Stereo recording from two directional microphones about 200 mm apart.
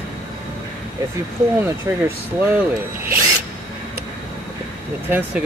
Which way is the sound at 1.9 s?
10° right (ahead or behind).